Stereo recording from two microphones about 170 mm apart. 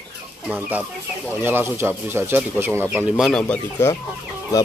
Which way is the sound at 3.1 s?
Centre (ahead or behind).